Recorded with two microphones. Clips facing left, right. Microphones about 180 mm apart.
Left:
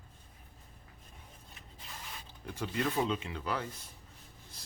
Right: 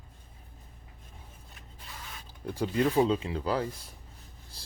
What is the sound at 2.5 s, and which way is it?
Speech, 30° right (ahead or behind).